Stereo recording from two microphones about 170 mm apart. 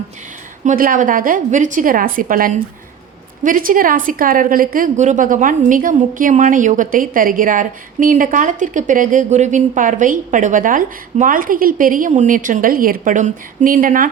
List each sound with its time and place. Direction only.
0.6 s a woman's voice: 50° right (ahead or behind)